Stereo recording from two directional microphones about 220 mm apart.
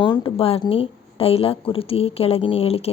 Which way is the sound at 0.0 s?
20° left (ahead or behind).